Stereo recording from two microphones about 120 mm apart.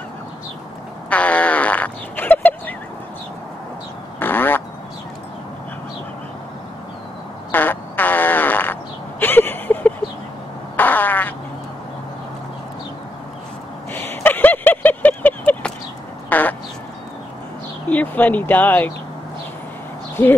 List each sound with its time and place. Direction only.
1.1 s fart: 10° left (ahead or behind)
4.2 s quack: 15° left (ahead or behind)
7.5 s fart: 15° left (ahead or behind)
9.2 s a sound: 15° left (ahead or behind)
10.8 s fart: 15° left (ahead or behind)
13.9 s a sound: 15° left (ahead or behind)
16.3 s quack: 15° left (ahead or behind)
17.8 s speech: 15° left (ahead or behind)